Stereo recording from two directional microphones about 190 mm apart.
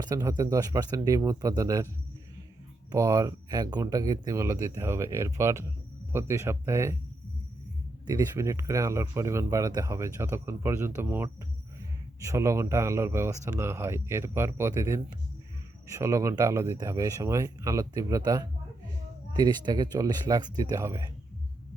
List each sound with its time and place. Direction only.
0.0 s speech: 20° right (ahead or behind)
2.9 s speech: 20° right (ahead or behind)
8.0 s speech: 15° right (ahead or behind)